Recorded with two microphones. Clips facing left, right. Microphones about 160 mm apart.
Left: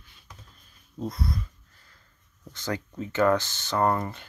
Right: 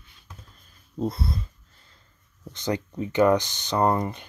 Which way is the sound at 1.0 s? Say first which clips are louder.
Right 4 dB; 30° right (ahead or behind).